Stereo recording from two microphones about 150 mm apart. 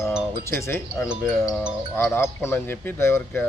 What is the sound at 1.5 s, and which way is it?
Speech, 5° right (ahead or behind).